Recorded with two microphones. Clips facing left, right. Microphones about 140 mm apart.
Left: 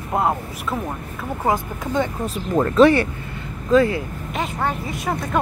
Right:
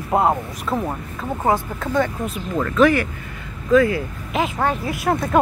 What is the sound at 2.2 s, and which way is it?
Speech, 35° left (ahead or behind).